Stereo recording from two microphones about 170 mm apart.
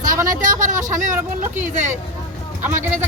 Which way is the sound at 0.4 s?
50° right (ahead or behind).